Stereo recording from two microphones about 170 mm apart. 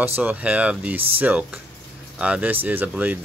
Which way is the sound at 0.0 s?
10° right (ahead or behind).